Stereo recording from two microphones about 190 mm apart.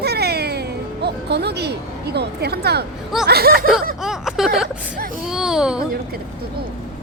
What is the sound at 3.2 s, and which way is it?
Speech, 55° right (ahead or behind).